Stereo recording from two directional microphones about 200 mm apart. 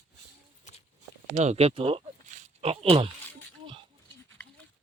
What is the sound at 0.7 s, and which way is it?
Horse, 40° left (ahead or behind).